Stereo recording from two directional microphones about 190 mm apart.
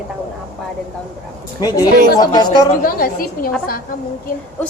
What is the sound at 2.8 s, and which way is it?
A woman's voice, 50° left (ahead or behind).